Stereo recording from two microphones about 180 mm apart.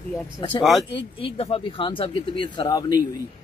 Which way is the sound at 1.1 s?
30° left (ahead or behind).